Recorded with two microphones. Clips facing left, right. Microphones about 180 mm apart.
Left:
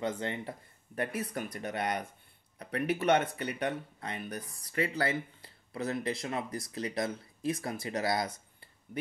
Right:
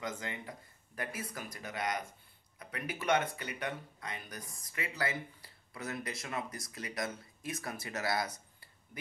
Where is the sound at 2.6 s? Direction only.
35° left (ahead or behind).